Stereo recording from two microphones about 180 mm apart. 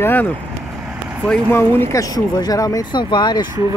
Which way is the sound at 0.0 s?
10° left (ahead or behind).